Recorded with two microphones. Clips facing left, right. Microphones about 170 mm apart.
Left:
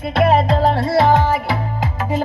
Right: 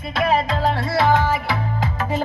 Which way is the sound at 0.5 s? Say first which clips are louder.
Left 5 dB; 30° left (ahead or behind).